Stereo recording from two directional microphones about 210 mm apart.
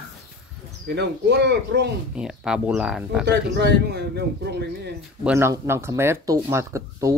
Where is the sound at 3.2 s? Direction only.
50° right (ahead or behind).